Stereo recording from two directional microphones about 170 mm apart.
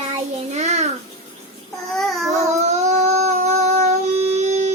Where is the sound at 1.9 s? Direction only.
Centre (ahead or behind).